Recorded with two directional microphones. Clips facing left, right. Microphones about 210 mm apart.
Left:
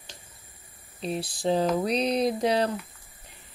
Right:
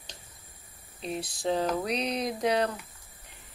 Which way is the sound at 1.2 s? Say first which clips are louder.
Left 4 dB; 30° left (ahead or behind).